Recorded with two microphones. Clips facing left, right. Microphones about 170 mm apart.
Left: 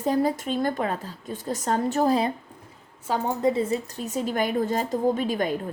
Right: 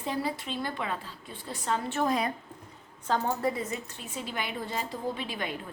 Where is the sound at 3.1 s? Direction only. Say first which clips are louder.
Left 4 dB; 15° left (ahead or behind).